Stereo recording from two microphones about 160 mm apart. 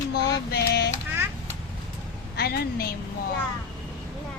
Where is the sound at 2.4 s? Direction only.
80° left.